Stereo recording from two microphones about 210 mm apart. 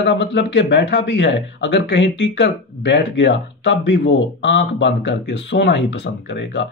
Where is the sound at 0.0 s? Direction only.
55° left (ahead or behind).